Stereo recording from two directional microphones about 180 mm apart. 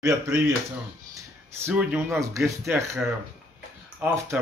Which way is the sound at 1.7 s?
10° right (ahead or behind).